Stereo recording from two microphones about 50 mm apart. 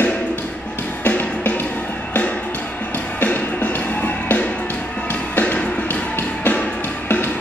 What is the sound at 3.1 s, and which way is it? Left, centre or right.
Music, left.